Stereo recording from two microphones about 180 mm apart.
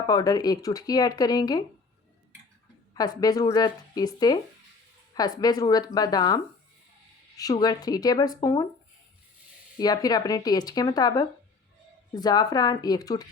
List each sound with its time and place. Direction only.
0.1 s speech: 20° left (ahead or behind)
2.9 s speech: 20° left (ahead or behind)
9.7 s speech: 20° left (ahead or behind)